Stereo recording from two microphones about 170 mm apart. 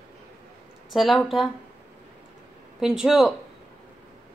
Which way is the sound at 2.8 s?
5° right (ahead or behind).